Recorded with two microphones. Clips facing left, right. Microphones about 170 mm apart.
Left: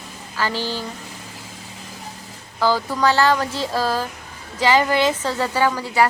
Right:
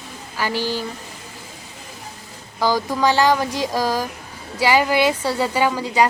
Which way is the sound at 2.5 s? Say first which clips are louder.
Even; 15° right (ahead or behind).